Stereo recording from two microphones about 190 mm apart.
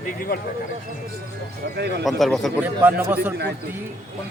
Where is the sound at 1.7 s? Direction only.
60° right (ahead or behind).